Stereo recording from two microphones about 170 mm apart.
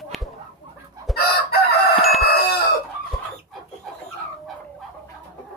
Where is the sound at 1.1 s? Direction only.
65° left (ahead or behind).